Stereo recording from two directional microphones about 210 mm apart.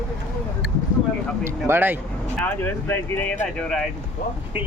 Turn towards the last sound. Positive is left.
turn(degrees=5)  # may be behind; listen again after turning